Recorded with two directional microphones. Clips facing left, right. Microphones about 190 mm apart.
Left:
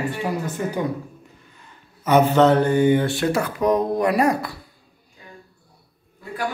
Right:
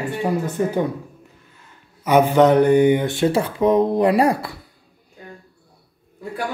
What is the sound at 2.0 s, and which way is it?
Speech, 10° right (ahead or behind).